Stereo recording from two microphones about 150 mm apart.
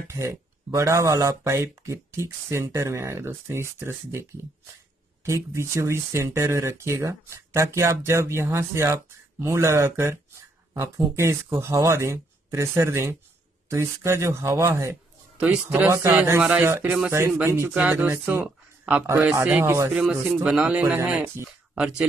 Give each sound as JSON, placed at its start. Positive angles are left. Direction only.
{"t": 0.1, "sound": "speech", "side_deg": -20}
{"t": 15.3, "sound": "speech", "side_deg": -10}